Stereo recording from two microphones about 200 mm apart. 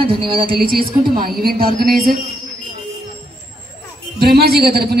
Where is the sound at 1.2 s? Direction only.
50° right (ahead or behind).